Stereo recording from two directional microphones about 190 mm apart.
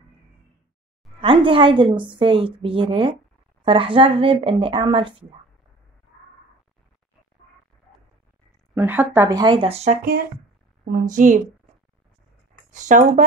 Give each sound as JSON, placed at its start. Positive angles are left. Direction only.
{"t": 1.2, "sound": "a woman's voice", "side_deg": -25}
{"t": 8.7, "sound": "a woman's voice", "side_deg": -10}
{"t": 10.9, "sound": "a woman's voice", "side_deg": -45}
{"t": 12.8, "sound": "speech", "side_deg": -40}